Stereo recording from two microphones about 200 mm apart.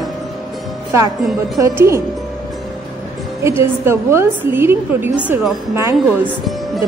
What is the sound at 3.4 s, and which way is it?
A woman's voice, 10° right (ahead or behind).